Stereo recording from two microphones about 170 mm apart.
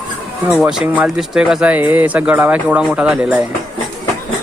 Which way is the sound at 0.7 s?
5° right (ahead or behind).